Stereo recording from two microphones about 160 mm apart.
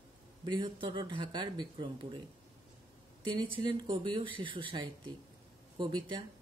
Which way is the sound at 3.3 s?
30° right (ahead or behind).